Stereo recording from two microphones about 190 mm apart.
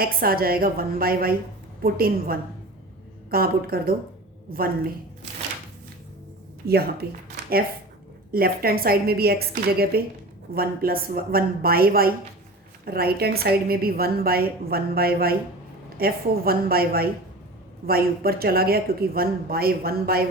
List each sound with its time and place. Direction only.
0.0 s a woman's voice: 50° right (ahead or behind)
6.7 s speech: 55° right (ahead or behind)
8.3 s a woman's voice: 50° right (ahead or behind)